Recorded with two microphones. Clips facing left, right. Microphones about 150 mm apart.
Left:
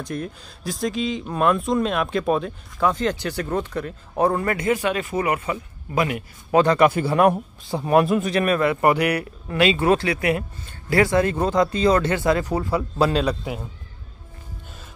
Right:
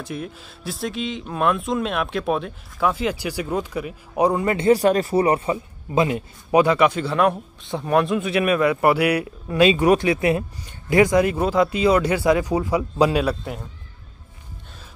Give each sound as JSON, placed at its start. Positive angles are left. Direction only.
{"t": 0.0, "sound": "speech", "side_deg": -5}
{"t": 4.6, "sound": "a man's voice", "side_deg": -35}
{"t": 6.6, "sound": "speech", "side_deg": -5}
{"t": 6.9, "sound": "a man's voice", "side_deg": 10}
{"t": 8.3, "sound": "speech", "side_deg": -10}